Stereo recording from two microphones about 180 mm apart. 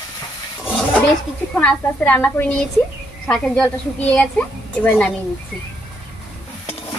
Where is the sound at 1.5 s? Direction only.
5° left (ahead or behind).